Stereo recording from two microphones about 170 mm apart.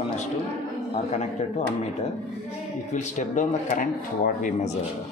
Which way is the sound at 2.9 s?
45° left (ahead or behind).